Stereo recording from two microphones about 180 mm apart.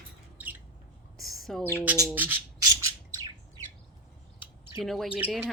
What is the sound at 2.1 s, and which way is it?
Rub, 10° right (ahead or behind).